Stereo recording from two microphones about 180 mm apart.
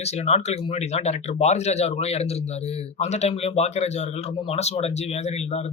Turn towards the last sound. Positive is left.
turn(degrees=35)  # may be behind; listen again after turning